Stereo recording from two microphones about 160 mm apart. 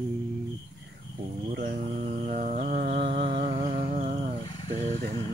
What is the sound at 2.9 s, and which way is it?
Music, 35° right (ahead or behind).